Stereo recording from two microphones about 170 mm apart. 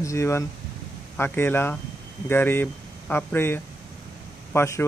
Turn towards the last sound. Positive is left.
turn(degrees=15)  # may be behind; listen again after turning